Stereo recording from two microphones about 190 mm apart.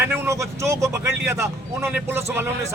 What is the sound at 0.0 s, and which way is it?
Speech, 15° right (ahead or behind).